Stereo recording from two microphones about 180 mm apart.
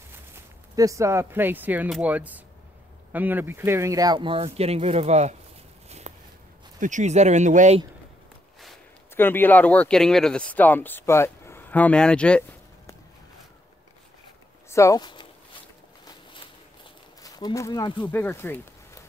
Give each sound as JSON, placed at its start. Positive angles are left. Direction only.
{"t": 0.7, "sound": "speech", "side_deg": -15}
{"t": 5.9, "sound": "walk", "side_deg": -35}
{"t": 6.8, "sound": "speech", "side_deg": -45}
{"t": 9.1, "sound": "speech", "side_deg": 10}
{"t": 14.7, "sound": "speech", "side_deg": 15}
{"t": 17.2, "sound": "speech", "side_deg": 20}
{"t": 18.1, "sound": "speech", "side_deg": 10}